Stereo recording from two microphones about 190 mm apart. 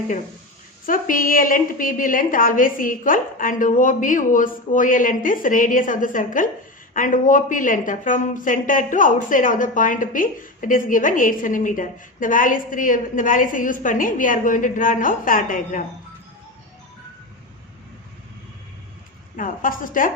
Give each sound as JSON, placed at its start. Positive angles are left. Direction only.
{"t": 0.9, "sound": "speech", "side_deg": 45}
{"t": 19.4, "sound": "speech", "side_deg": 45}